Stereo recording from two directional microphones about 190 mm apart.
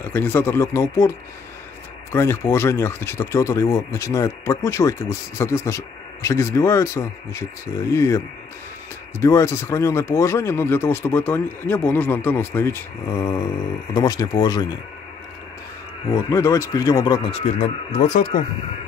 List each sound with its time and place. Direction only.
0.0 s speech: 10° left (ahead or behind)
2.1 s speech: 10° left (ahead or behind)
9.2 s speech: 15° left (ahead or behind)
16.1 s speech: 15° left (ahead or behind)
17.3 s speech: 40° left (ahead or behind)